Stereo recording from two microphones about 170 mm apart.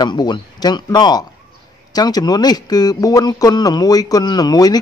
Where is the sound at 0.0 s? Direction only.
25° left (ahead or behind).